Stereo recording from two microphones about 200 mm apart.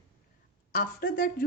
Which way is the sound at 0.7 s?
45° left (ahead or behind).